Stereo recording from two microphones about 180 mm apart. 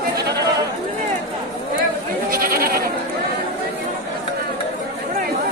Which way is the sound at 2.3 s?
55° right (ahead or behind).